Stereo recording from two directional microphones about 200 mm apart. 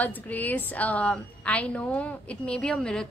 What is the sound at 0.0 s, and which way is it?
A woman's voice, 10° left (ahead or behind).